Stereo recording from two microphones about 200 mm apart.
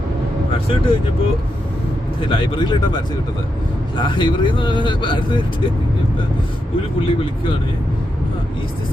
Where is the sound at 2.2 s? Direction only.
25° left (ahead or behind).